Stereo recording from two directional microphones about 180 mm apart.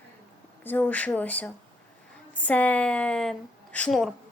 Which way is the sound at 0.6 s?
10° left (ahead or behind).